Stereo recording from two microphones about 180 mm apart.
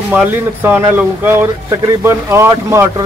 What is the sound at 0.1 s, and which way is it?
Speech, 10° right (ahead or behind).